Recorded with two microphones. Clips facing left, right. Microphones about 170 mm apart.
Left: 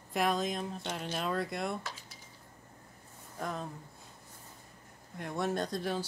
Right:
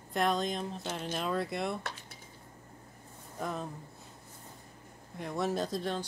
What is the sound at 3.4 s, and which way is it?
Speech, centre (ahead or behind).